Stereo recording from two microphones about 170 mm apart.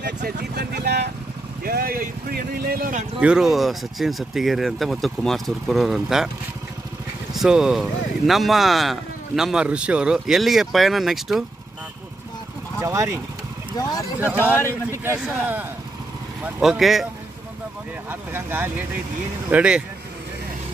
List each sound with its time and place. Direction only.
0.0 s speech: 75° right (ahead or behind)
1.6 s speech: 60° right (ahead or behind)
3.2 s speech: 5° right (ahead or behind)
7.3 s speech: 5° right (ahead or behind)
12.8 s speech: 20° right (ahead or behind)
14.3 s speech: 15° left (ahead or behind)
15.0 s a man's voice: 10° right (ahead or behind)
18.3 s a man's voice: 10° right (ahead or behind)